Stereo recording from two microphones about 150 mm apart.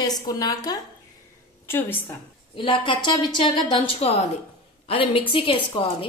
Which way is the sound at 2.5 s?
35° left (ahead or behind).